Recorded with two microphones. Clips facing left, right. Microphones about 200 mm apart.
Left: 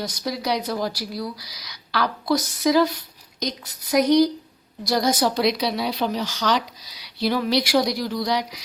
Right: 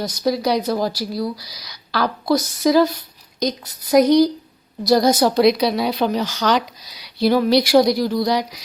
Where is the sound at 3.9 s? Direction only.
35° right (ahead or behind).